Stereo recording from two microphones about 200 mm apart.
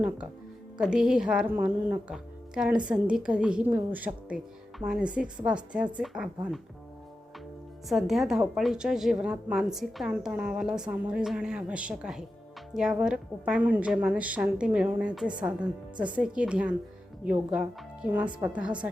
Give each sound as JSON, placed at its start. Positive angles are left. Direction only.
{"t": 0.8, "sound": "a woman's voice", "side_deg": -5}
{"t": 7.9, "sound": "a woman's voice", "side_deg": 0}